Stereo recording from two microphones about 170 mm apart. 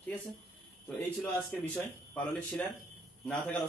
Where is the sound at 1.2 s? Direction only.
5° left (ahead or behind).